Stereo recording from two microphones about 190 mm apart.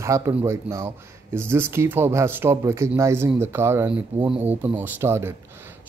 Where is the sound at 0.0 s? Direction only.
15° right (ahead or behind).